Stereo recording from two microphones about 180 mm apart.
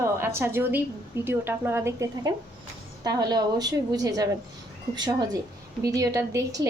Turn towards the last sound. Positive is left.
turn(degrees=-20)  # may be behind; listen again after turning